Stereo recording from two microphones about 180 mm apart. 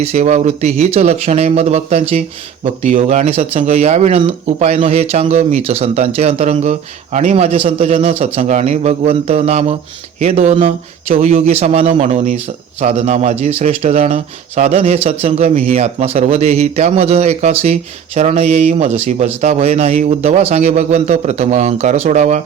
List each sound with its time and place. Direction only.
0.0 s speech: 40° right (ahead or behind)